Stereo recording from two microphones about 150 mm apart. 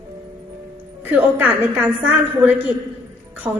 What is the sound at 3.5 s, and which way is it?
Speech, 25° right (ahead or behind).